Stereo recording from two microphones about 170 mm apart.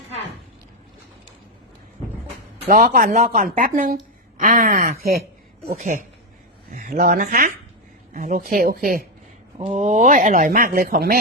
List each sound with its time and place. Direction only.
2.6 s speech: 55° right (ahead or behind)
9.6 s speech: 40° right (ahead or behind); by 11.2 s 60° right (ahead or behind)